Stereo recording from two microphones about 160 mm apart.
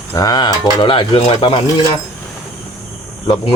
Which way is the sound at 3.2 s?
30° left (ahead or behind).